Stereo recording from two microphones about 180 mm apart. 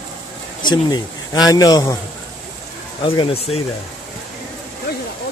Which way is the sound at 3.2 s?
35° left (ahead or behind).